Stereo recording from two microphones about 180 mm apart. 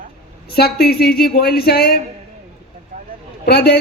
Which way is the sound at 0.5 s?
60° left (ahead or behind).